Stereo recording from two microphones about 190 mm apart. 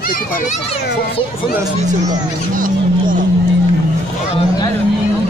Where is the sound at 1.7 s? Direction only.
40° right (ahead or behind).